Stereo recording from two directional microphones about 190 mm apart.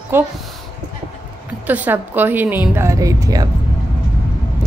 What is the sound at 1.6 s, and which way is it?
A woman's voice, 10° right (ahead or behind).